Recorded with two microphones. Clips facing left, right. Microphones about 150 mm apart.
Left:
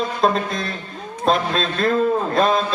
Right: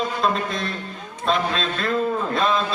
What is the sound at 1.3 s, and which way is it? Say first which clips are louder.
Speech: left 3 dB; 40° left (ahead or behind).